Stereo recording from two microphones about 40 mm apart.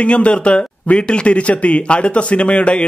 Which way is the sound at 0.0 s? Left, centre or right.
Left.